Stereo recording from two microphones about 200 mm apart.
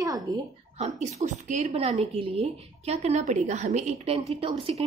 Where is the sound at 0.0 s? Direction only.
15° right (ahead or behind).